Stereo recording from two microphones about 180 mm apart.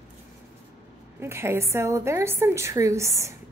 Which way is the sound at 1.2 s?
15° right (ahead or behind).